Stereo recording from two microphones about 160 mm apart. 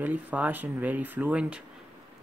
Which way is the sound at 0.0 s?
10° right (ahead or behind).